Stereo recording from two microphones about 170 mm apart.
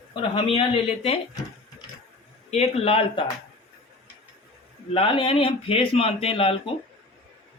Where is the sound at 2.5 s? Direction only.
35° left (ahead or behind).